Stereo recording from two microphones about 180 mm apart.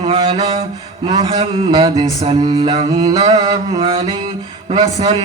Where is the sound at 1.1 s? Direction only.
30° right (ahead or behind).